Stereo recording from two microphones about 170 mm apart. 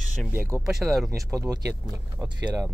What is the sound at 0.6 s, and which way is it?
Speech, centre (ahead or behind).